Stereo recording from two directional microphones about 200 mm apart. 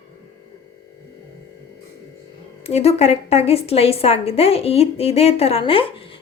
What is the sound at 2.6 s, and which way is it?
A woman's voice, 30° left (ahead or behind).